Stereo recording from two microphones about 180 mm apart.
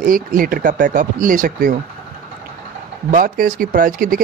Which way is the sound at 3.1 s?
50° right (ahead or behind).